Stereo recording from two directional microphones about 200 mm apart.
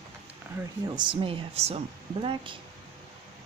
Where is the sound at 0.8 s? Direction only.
25° right (ahead or behind).